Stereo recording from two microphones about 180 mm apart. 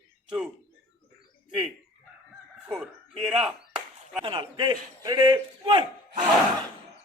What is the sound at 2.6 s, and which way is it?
Chop, centre (ahead or behind).